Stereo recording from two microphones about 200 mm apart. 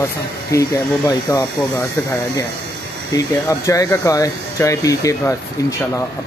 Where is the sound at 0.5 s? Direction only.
15° left (ahead or behind).